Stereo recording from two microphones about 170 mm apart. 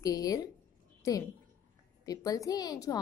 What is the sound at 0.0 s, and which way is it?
Speech, 20° left (ahead or behind).